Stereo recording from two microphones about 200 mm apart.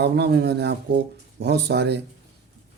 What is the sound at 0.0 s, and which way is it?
Speech, 55° right (ahead or behind).